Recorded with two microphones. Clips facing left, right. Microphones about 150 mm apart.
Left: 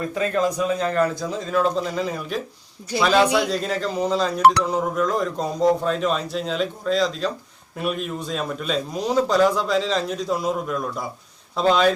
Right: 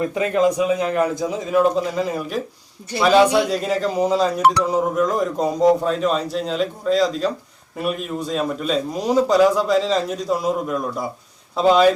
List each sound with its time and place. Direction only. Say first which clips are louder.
0.0 s a man's voice: right 4 dB; 20° right (ahead or behind)